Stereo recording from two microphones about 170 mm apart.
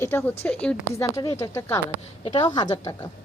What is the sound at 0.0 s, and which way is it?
Speech, 10° left (ahead or behind).